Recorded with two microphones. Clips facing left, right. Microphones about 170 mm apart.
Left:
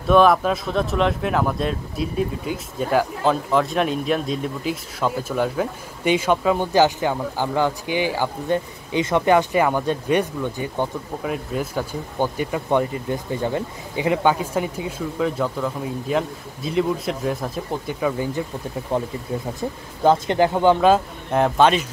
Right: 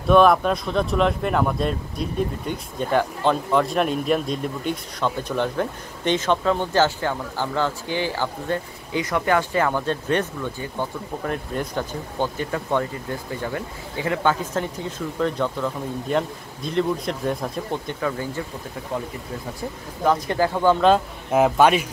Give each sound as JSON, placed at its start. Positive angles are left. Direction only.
{"t": 0.0, "sound": "speech", "side_deg": 0}
{"t": 11.2, "sound": "speech", "side_deg": 5}
{"t": 20.0, "sound": "speech", "side_deg": 25}
{"t": 21.3, "sound": "speech", "side_deg": -5}